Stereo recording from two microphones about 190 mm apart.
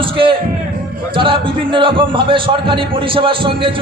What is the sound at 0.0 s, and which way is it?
Music, 25° right (ahead or behind).